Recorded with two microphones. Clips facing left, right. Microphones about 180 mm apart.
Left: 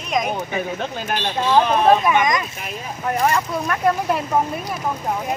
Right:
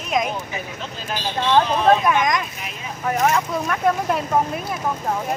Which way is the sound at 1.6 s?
60° left (ahead or behind).